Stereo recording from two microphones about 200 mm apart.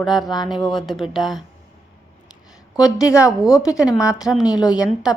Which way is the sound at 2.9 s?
15° left (ahead or behind).